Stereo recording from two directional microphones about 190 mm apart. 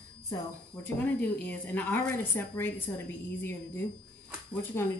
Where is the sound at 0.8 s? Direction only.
10° left (ahead or behind).